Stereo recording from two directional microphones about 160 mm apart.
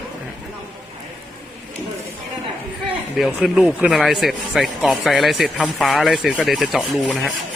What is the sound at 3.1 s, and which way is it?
Speech, centre (ahead or behind).